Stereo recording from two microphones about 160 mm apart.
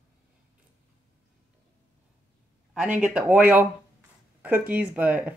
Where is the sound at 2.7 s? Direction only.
10° right (ahead or behind).